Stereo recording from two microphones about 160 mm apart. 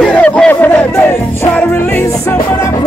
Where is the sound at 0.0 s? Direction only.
5° left (ahead or behind).